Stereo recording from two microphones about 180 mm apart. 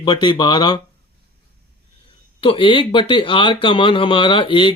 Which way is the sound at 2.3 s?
30° left (ahead or behind).